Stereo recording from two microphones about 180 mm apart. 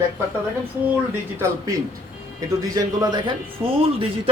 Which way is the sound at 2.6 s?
20° right (ahead or behind).